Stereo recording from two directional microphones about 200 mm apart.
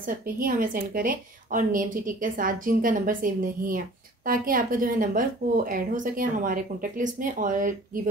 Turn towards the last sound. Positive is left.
turn(degrees=-40)  # may be behind; listen again after turning